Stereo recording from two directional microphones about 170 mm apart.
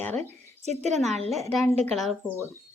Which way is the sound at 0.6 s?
40° right (ahead or behind).